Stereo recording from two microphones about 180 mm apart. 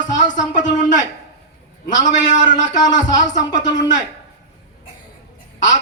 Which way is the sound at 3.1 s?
45° left (ahead or behind).